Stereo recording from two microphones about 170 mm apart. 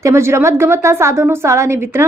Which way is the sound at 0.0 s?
15° right (ahead or behind).